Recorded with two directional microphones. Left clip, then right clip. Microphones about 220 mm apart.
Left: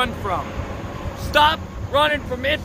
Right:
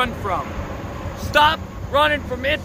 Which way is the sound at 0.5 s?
55° left (ahead or behind).